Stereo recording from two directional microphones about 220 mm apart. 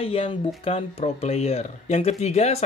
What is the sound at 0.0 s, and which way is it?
Speech, 25° left (ahead or behind).